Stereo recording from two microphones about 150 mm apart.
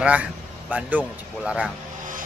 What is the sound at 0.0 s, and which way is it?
Speech, 10° right (ahead or behind).